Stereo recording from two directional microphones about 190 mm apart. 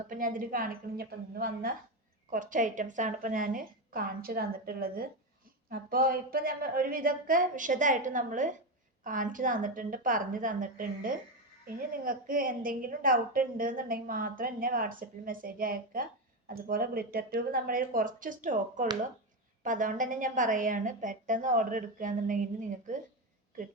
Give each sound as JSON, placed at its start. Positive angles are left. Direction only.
{"t": 0.1, "sound": "a woman's voice", "side_deg": -45}